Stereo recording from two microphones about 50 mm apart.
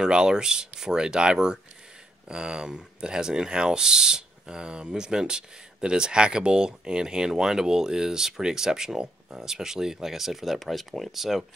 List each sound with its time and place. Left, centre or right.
0.0 s speech: centre